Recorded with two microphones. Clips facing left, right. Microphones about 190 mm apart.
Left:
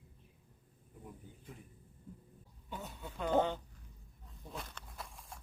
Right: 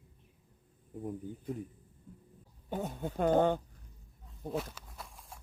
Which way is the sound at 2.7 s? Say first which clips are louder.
Right 10 dB; 50° right (ahead or behind).